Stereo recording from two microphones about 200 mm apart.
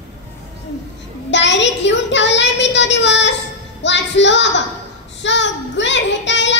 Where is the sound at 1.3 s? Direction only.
65° left (ahead or behind).